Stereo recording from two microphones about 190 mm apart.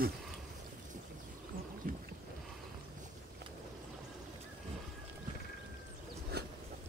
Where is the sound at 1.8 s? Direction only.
45° right (ahead or behind).